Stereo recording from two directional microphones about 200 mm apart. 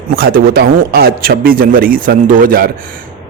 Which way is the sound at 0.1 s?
50° right (ahead or behind).